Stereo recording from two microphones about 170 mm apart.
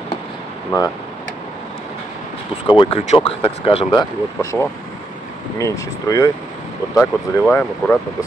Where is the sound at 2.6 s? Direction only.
30° left (ahead or behind).